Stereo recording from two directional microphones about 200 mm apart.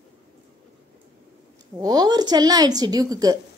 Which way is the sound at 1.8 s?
20° right (ahead or behind).